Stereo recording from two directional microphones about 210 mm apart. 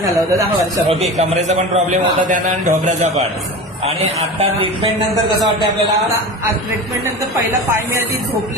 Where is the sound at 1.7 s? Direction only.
35° right (ahead or behind).